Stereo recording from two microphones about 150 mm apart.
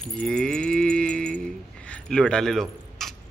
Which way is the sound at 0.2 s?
5° left (ahead or behind).